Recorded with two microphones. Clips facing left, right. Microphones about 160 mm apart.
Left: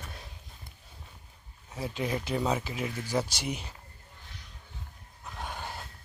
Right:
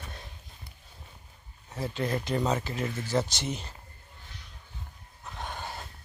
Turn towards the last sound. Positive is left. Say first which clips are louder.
# right 1 dB
turn(degrees=10)  # may be behind; listen again after turning